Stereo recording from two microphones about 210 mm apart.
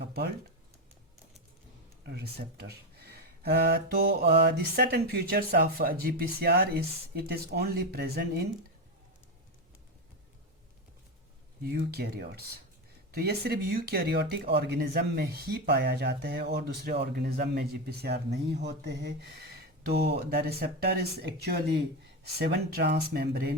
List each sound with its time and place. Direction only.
2.0 s speech: 50° right (ahead or behind)
11.6 s speech: 50° right (ahead or behind)